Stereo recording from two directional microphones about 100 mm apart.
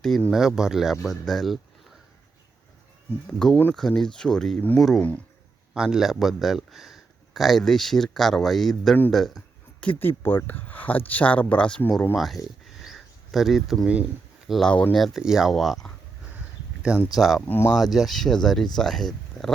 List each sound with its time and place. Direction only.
0.3 s speech: 5° right (ahead or behind)
3.2 s speech: 10° left (ahead or behind)
9.8 s speech: 20° left (ahead or behind); by 12.4 s centre (ahead or behind)
12.6 s a sound: centre (ahead or behind)
13.9 s a sound: 15° right (ahead or behind)
14.5 s speech: 5° left (ahead or behind)
17.2 s speech: centre (ahead or behind)
17.4 s speech: 20° left (ahead or behind)
17.7 s speech: centre (ahead or behind)